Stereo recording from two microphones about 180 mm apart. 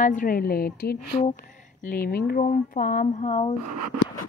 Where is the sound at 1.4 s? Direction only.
45° left (ahead or behind).